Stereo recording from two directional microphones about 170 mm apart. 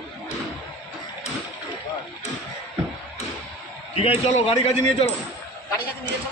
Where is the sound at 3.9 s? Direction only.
35° left (ahead or behind).